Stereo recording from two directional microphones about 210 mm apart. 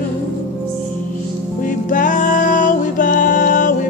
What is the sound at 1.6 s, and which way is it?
Music, 40° left (ahead or behind).